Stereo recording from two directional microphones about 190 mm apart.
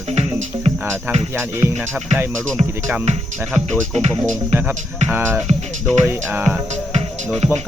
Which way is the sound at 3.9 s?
35° right (ahead or behind).